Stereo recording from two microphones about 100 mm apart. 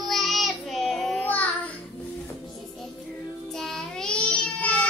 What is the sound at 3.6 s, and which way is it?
Child singing, 5° left (ahead or behind).